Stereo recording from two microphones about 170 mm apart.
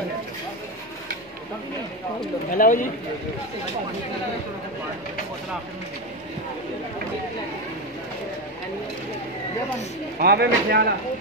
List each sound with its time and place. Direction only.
2.5 s speech: 55° left (ahead or behind)
10.1 s speech: 65° right (ahead or behind)